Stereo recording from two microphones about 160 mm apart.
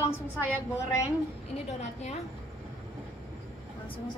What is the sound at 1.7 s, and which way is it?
Speech, 45° left (ahead or behind).